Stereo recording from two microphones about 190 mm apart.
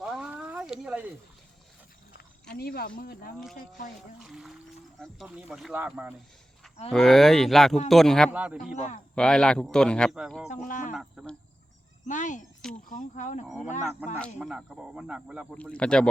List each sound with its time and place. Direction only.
0.0 s a sound: 5° right (ahead or behind)
2.6 s speech: 55° left (ahead or behind)
4.2 s speech: centre (ahead or behind)
10.7 s speech: 45° left (ahead or behind)
10.9 s speech: 5° right (ahead or behind)
12.0 s speech: 40° left (ahead or behind)
14.0 s speech: 10° right (ahead or behind)